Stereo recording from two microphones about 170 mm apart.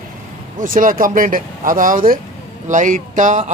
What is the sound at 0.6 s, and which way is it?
Speech, 55° right (ahead or behind).